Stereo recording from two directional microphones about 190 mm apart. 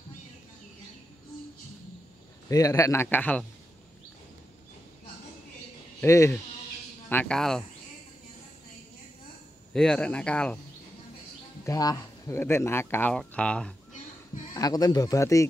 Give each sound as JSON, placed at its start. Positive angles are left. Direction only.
{"t": 2.5, "sound": "speech", "side_deg": 15}
{"t": 5.9, "sound": "speech", "side_deg": 15}
{"t": 9.8, "sound": "speech", "side_deg": 5}
{"t": 11.6, "sound": "speech", "side_deg": 20}
{"t": 14.5, "sound": "speech", "side_deg": 20}